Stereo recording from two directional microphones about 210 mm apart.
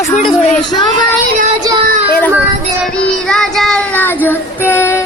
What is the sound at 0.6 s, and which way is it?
Speech, 20° left (ahead or behind).